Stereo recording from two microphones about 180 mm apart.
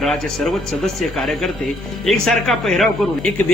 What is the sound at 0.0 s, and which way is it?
A man's voice, centre (ahead or behind).